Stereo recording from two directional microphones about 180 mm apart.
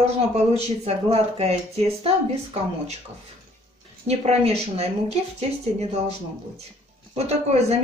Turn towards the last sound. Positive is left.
turn(degrees=-35)  # may be behind; listen again after turning